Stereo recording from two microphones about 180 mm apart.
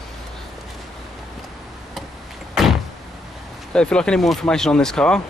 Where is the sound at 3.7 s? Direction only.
5° left (ahead or behind).